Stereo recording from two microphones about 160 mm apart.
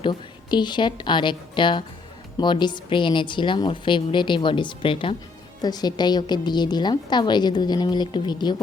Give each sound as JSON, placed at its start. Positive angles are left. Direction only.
{"t": 0.0, "sound": "a woman's voice", "side_deg": 30}